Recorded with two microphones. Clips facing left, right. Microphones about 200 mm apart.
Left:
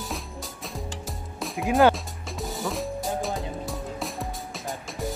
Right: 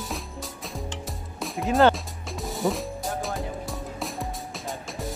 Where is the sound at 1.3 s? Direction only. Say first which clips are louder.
Even; centre (ahead or behind).